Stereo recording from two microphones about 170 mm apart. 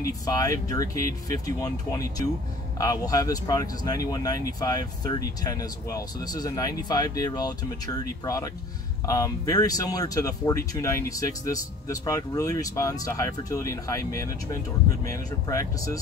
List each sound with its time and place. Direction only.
0.0 s speech: 20° left (ahead or behind)